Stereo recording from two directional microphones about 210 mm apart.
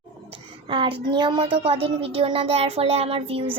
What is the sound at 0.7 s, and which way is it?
Speech, 25° right (ahead or behind).